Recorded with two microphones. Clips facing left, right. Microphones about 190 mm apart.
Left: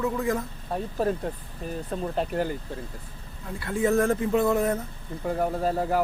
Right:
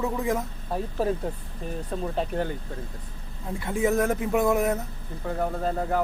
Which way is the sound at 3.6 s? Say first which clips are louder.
Left 1 dB; 15° right (ahead or behind).